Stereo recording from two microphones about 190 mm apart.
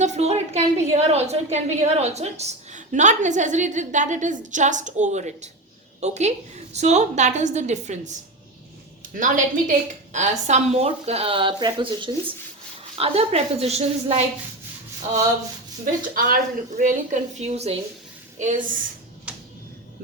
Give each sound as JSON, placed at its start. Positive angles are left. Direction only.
{"t": 0.0, "sound": "a woman's voice", "side_deg": -35}
{"t": 9.1, "sound": "a woman's voice", "side_deg": -40}
{"t": 16.1, "sound": "a woman's voice", "side_deg": -50}
{"t": 19.3, "sound": "a sound", "side_deg": -5}